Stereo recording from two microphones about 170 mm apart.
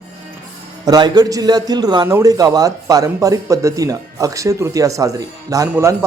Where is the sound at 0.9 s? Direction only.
25° right (ahead or behind).